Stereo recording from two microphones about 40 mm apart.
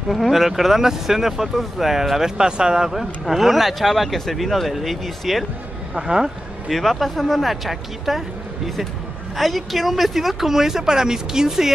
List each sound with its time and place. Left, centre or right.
0.1 s speech: centre
2.3 s speech: right
2.9 s speech: centre
5.9 s speech: centre
6.7 s speech: centre
9.4 s speech: centre